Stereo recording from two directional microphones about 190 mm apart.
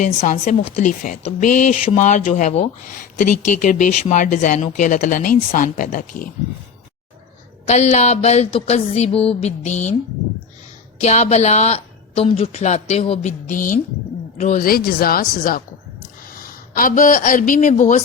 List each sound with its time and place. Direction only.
0.0 s speech: 40° left (ahead or behind)
7.7 s speech: 35° left (ahead or behind)
11.0 s a woman's voice: 35° left (ahead or behind)